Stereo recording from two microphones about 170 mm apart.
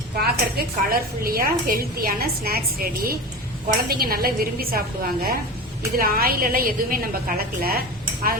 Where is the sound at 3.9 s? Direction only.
60° right (ahead or behind).